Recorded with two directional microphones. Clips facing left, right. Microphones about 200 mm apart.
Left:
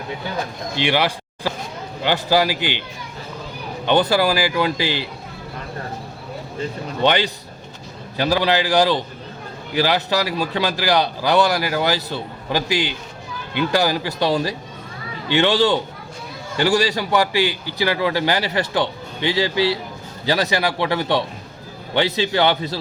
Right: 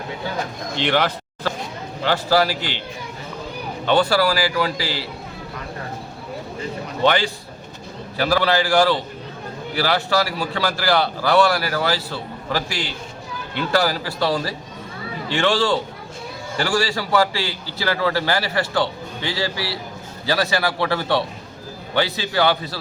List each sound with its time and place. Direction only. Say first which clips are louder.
0.8 s a man's voice: even; 10° left (ahead or behind)
3.8 s a man's voice: left 1 dB; 20° left (ahead or behind)
7.0 s a man's voice: even; 20° left (ahead or behind)